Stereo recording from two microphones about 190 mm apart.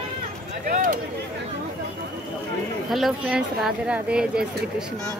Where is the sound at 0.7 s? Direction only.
45° right (ahead or behind).